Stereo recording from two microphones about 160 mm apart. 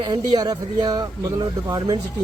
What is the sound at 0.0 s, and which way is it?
Speech, 25° right (ahead or behind).